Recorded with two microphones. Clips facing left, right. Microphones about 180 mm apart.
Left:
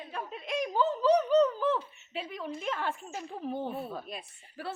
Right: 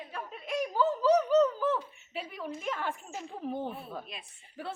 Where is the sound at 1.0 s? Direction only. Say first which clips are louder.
Even; 10° right (ahead or behind).